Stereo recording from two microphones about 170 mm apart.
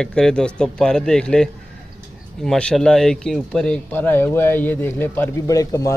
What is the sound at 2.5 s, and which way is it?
Speech, 5° left (ahead or behind).